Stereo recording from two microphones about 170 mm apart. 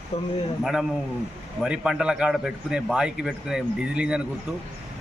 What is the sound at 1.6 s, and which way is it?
Speech, 5° right (ahead or behind).